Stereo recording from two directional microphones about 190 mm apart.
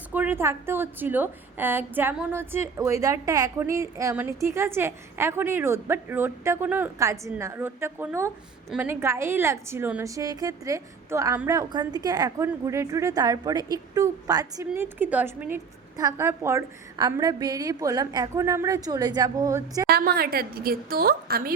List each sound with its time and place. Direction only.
0.1 s a woman's voice: 10° right (ahead or behind)
19.9 s a woman's voice: 55° right (ahead or behind)